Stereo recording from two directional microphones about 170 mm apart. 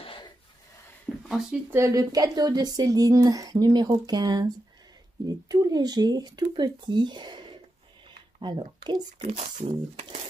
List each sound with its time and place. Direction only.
0.0 s a sound: 30° left (ahead or behind)
1.3 s speech: centre (ahead or behind)
1.7 s speech: 15° right (ahead or behind)
5.5 s a woman's voice: 25° right (ahead or behind)
9.2 s speech: 40° right (ahead or behind)